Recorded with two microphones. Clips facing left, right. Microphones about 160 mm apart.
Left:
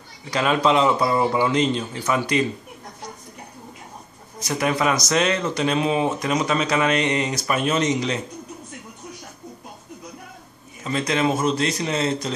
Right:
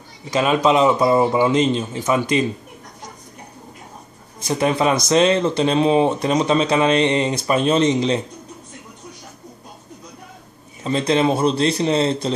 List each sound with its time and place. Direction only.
0.3 s speech: 20° right (ahead or behind)
4.5 s speech: 25° right (ahead or behind)
10.8 s speech: 30° right (ahead or behind)